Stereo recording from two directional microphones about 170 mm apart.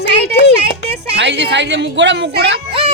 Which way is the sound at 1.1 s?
90° right.